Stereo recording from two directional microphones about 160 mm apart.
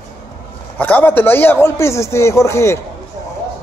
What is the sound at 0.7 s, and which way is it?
Speech, 10° left (ahead or behind).